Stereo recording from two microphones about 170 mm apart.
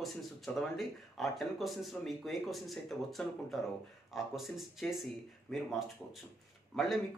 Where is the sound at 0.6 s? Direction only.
Centre (ahead or behind).